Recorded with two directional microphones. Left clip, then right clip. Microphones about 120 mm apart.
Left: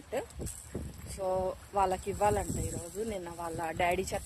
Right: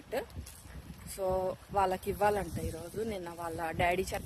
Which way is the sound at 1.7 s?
40° right (ahead or behind).